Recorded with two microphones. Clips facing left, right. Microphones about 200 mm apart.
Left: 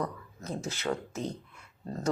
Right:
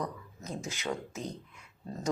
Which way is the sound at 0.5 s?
35° left (ahead or behind).